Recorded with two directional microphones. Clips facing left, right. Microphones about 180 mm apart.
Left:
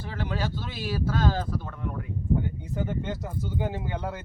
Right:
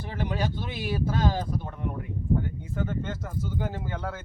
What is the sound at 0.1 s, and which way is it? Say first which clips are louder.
Speech: right 1 dB; 20° right (ahead or behind).